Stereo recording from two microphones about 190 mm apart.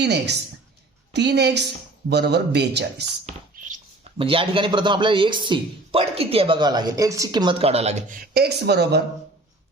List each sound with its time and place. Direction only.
0.0 s speech: 60° right (ahead or behind)
4.2 s speech: 30° right (ahead or behind)
8.3 s speech: 60° right (ahead or behind)